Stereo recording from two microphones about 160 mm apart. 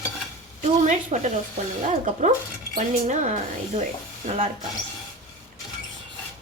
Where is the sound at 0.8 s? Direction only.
50° right (ahead or behind).